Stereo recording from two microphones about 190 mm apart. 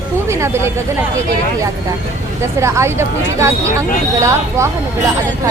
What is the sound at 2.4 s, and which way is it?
A woman's voice, 15° right (ahead or behind).